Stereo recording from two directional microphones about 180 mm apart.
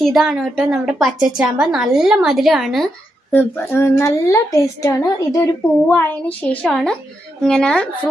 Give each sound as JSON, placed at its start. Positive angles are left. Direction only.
{"t": 0.0, "sound": "a woman's voice", "side_deg": 0}
{"t": 3.3, "sound": "a woman's voice", "side_deg": 10}